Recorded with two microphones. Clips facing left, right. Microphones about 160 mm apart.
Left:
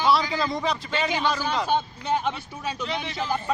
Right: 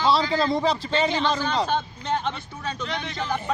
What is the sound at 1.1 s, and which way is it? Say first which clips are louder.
Speech: right 1 dB; 10° left (ahead or behind).